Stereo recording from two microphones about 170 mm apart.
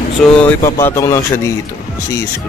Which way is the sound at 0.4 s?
15° left (ahead or behind).